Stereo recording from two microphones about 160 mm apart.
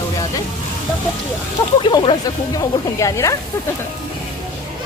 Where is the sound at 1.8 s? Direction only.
30° left (ahead or behind).